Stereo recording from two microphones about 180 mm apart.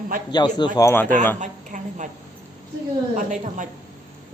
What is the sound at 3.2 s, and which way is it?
Speech, 45° right (ahead or behind).